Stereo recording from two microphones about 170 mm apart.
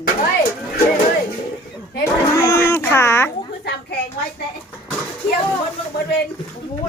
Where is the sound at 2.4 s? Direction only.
20° left (ahead or behind).